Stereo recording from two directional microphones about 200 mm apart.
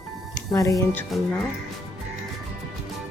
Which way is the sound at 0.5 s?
15° left (ahead or behind).